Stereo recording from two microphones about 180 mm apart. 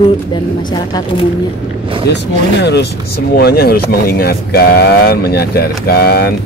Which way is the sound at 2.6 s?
70° left (ahead or behind).